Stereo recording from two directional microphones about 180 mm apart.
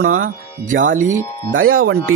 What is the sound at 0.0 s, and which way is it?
Speech, 50° right (ahead or behind).